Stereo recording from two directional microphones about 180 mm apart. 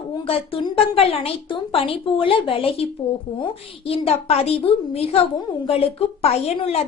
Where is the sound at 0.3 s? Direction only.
30° left (ahead or behind).